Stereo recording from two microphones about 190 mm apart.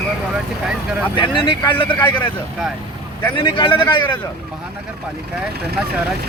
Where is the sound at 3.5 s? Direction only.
25° left (ahead or behind).